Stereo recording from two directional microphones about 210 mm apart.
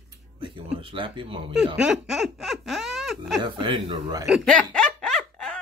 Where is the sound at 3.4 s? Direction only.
25° right (ahead or behind).